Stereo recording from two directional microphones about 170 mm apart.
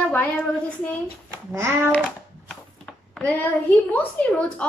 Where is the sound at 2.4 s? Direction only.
5° left (ahead or behind).